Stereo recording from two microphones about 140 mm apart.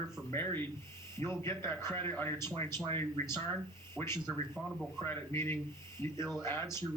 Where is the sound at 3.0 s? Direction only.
20° left (ahead or behind).